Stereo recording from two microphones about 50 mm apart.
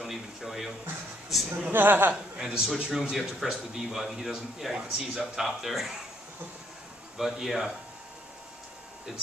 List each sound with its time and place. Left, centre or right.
0.0 s a sound: centre
1.7 s speech: right
2.3 s a man's voice: centre
7.2 s a man's voice: centre